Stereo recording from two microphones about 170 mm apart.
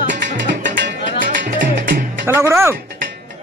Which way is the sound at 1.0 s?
50° right (ahead or behind).